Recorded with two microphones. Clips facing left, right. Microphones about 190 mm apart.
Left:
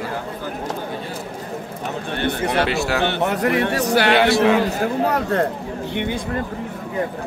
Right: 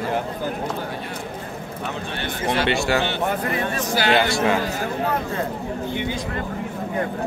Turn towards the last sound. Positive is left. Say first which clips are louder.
# left 2 dB
turn(degrees=60)  # may be behind; listen again after turning